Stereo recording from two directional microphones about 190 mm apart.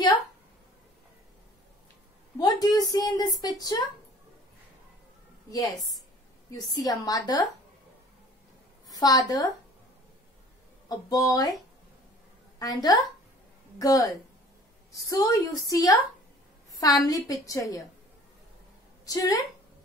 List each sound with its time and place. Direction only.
2.3 s a woman's voice: 20° left (ahead or behind)
5.5 s a woman's voice: 20° left (ahead or behind)
8.8 s a woman's voice: 20° left (ahead or behind)
10.9 s a woman's voice: 20° left (ahead or behind)
12.5 s a woman's voice: 20° left (ahead or behind)
19.0 s a woman's voice: 20° left (ahead or behind)